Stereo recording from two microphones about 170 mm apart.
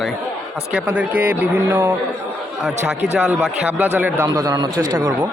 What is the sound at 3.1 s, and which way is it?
Speech, 10° right (ahead or behind).